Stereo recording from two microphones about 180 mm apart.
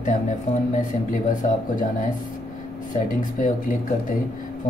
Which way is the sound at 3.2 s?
45° left (ahead or behind).